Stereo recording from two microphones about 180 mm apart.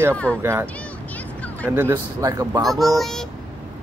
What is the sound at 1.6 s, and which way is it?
Speech, 10° right (ahead or behind).